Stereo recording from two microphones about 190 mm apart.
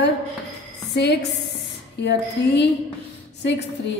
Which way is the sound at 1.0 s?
60° left (ahead or behind).